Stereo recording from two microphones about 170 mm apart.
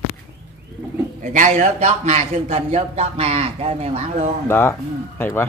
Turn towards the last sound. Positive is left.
turn(degrees=15)  # may be behind; listen again after turning